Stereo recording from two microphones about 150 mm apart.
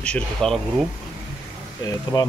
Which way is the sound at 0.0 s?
5° left (ahead or behind).